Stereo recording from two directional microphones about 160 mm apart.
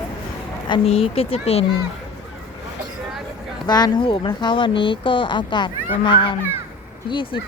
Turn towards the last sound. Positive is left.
turn(degrees=30)  # may be behind; listen again after turning